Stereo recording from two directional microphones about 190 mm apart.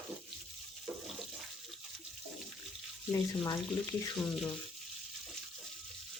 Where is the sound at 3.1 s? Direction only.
20° left (ahead or behind).